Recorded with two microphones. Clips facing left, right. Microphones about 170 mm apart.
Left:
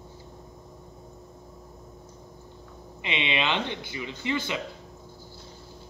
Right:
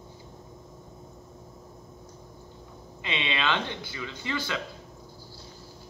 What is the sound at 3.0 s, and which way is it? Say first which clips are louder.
A man's voice: left 1 dB; 20° left (ahead or behind).